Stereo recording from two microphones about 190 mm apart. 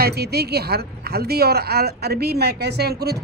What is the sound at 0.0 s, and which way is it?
Speech, 55° right (ahead or behind).